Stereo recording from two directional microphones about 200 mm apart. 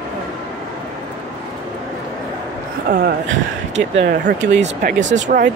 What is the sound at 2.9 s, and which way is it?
Speech, 50° right (ahead or behind).